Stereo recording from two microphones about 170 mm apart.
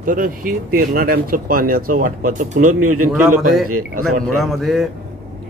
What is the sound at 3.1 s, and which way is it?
A man's voice, centre (ahead or behind).